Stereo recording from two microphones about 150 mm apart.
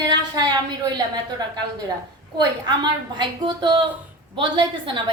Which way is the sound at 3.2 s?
30° right (ahead or behind).